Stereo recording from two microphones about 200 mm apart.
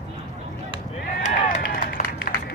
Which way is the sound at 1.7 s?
50° left (ahead or behind).